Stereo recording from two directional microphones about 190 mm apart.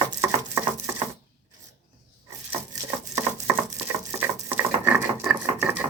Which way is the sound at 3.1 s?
15° right (ahead or behind).